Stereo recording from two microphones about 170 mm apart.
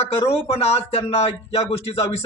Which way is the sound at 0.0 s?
35° left (ahead or behind).